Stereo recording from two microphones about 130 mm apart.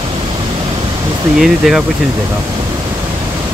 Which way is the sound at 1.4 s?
Centre (ahead or behind).